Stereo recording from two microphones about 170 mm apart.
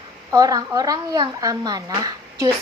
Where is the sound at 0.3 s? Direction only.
20° right (ahead or behind).